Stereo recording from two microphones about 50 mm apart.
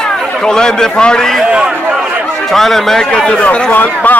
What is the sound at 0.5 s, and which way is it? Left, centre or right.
Speech, centre.